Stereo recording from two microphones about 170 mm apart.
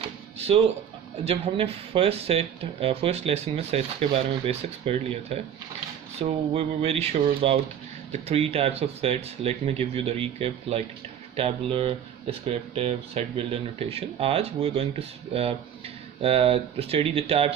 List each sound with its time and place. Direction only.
1.2 s speech: 35° right (ahead or behind)